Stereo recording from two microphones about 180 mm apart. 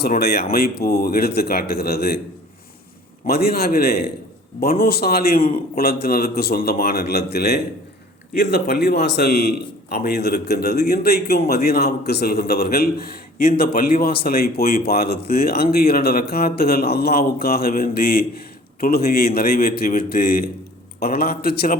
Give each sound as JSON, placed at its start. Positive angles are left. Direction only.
{"t": 0.0, "sound": "a man's voice", "side_deg": 60}
{"t": 3.2, "sound": "a man's voice", "side_deg": 60}